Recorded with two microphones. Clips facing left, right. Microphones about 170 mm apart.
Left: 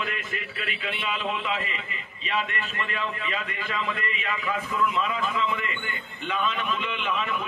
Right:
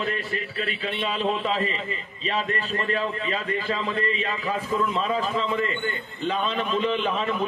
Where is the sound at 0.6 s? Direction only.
35° right (ahead or behind).